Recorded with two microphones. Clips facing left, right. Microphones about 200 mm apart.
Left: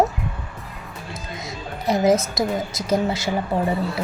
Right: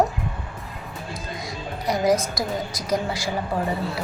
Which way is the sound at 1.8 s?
25° left (ahead or behind).